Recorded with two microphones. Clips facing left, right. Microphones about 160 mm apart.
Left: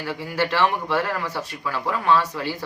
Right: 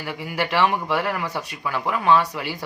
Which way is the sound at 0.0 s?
15° right (ahead or behind).